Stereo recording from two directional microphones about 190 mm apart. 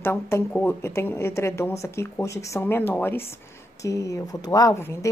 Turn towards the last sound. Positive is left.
turn(degrees=15)  # may be behind; listen again after turning